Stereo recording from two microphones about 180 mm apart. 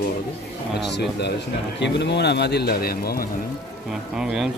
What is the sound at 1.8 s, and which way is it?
Speech, 75° left (ahead or behind).